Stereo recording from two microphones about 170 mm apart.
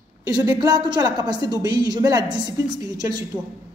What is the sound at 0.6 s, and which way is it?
A man's voice, 25° right (ahead or behind).